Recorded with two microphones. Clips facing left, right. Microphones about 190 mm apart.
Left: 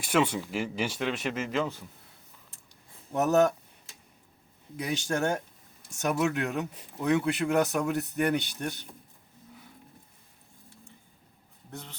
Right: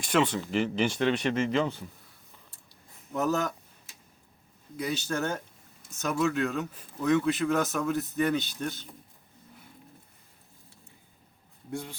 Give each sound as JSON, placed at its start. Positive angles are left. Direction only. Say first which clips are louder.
{"t": 0.0, "sound": "speech", "louder": "even", "side_deg": 10}
{"t": 3.0, "sound": "a sound", "louder": "left 1 dB", "side_deg": 25}
{"t": 4.9, "sound": "speech", "louder": "left 7 dB", "side_deg": 15}
{"t": 7.9, "sound": "speech", "louder": "even", "side_deg": 65}
{"t": 8.3, "sound": "speech", "louder": "even", "side_deg": 15}
{"t": 11.7, "sound": "a man's voice", "louder": "right 8 dB", "side_deg": -10}